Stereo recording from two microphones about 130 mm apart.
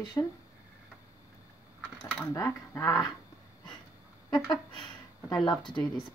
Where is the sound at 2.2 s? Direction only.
20° left (ahead or behind).